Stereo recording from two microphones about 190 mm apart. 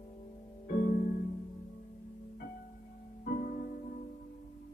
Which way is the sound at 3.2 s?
50° left (ahead or behind).